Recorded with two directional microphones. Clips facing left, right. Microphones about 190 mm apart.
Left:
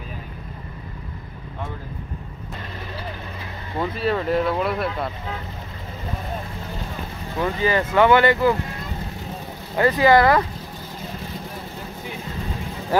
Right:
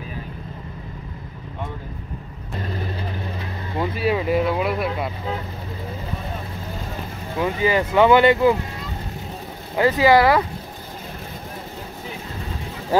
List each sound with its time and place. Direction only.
3.7 s speech: 5° right (ahead or behind)
7.3 s speech: 15° right (ahead or behind)
9.8 s speech: 15° right (ahead or behind)